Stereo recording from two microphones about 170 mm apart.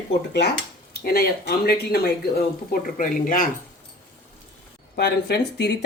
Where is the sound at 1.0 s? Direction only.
65° left (ahead or behind).